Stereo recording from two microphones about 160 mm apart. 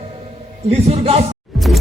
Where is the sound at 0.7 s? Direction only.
40° right (ahead or behind).